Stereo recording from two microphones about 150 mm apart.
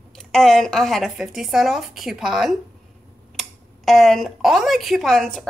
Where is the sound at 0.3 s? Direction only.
Centre (ahead or behind).